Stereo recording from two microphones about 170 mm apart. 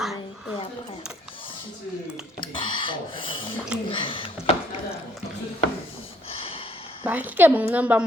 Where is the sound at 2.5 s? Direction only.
30° left (ahead or behind).